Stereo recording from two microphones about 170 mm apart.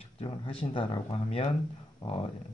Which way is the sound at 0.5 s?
30° left (ahead or behind).